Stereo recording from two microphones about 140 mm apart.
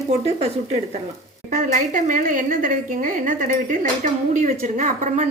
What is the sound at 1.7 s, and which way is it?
A woman's voice, 65° right (ahead or behind).